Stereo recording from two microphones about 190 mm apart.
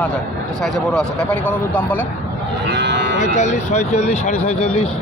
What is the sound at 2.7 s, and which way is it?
Moo, 65° right (ahead or behind).